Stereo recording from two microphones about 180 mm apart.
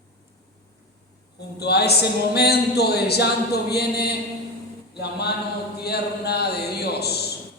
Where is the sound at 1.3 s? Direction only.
65° left (ahead or behind).